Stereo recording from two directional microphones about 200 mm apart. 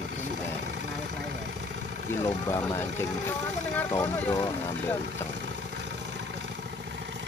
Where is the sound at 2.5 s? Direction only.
15° left (ahead or behind).